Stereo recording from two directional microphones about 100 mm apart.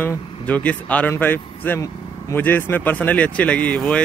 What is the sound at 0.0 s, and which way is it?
A man's voice, 15° left (ahead or behind).